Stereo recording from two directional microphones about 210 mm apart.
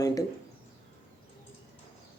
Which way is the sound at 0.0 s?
15° left (ahead or behind).